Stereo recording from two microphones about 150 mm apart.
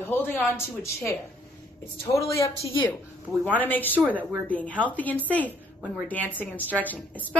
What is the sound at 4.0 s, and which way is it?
Speech, 15° right (ahead or behind).